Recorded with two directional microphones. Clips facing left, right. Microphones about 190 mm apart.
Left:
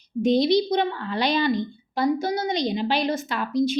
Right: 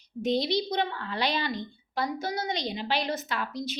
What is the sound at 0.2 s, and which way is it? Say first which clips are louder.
Speech: left 8 dB; 15° left (ahead or behind).